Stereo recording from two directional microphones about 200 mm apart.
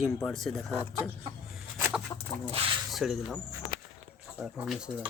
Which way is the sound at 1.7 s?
10° right (ahead or behind).